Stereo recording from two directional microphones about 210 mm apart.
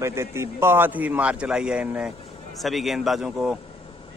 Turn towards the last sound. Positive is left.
turn(degrees=-5)  # may be behind; listen again after turning